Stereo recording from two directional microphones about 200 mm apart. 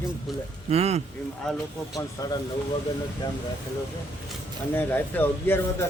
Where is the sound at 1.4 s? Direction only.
5° left (ahead or behind).